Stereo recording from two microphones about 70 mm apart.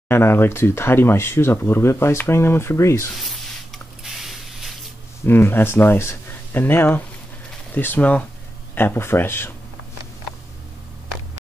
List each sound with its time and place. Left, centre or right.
0.1 s speech: left
3.2 s a sound: centre
5.2 s speech: left
8.7 s speech: left